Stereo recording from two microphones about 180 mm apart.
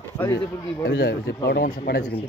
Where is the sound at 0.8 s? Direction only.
70° left (ahead or behind).